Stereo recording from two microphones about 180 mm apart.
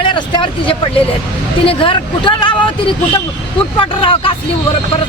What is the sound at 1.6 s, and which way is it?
Speech, 30° left (ahead or behind).